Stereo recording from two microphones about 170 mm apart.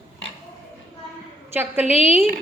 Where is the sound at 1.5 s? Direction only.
10° right (ahead or behind).